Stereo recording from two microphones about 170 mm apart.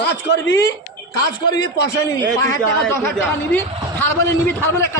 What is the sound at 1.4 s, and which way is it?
A man's voice, 25° left (ahead or behind).